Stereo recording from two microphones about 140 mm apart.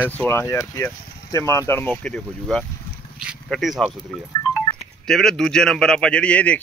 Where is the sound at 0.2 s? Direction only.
15° left (ahead or behind).